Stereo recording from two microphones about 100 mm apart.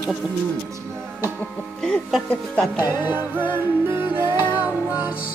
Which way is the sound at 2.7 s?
40° left (ahead or behind).